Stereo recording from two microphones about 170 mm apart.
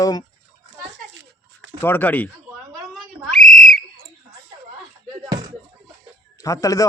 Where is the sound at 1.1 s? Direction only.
90° right.